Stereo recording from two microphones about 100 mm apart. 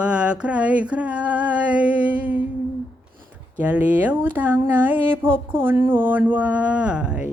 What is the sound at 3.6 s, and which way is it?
Speech, 15° right (ahead or behind).